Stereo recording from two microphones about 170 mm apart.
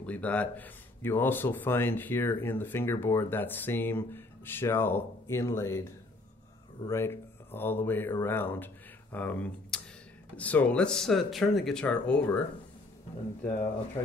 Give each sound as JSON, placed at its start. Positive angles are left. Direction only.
{"t": 0.0, "sound": "speech", "side_deg": 10}
{"t": 14.0, "sound": "speech", "side_deg": 30}